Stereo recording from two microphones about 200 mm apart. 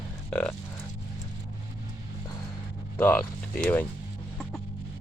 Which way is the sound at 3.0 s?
10° left (ahead or behind).